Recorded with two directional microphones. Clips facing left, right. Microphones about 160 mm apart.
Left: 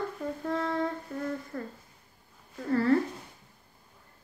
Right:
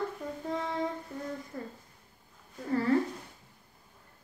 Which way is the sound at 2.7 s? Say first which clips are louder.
Left 3 dB; 15° right (ahead or behind).